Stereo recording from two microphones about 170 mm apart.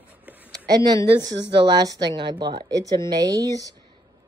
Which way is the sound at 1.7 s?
25° right (ahead or behind).